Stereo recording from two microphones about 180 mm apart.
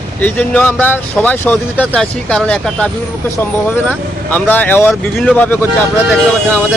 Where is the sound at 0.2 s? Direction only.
10° left (ahead or behind).